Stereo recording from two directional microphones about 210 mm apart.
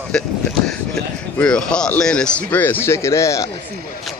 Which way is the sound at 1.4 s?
5° left (ahead or behind).